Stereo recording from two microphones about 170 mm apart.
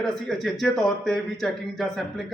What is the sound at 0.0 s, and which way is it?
A man's voice, centre (ahead or behind).